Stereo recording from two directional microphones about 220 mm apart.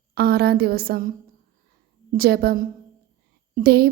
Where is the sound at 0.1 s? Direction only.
45° right (ahead or behind).